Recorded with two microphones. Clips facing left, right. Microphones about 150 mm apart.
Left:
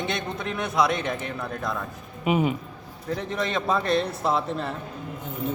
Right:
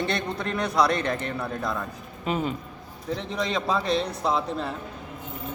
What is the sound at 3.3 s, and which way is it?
A man's voice, centre (ahead or behind).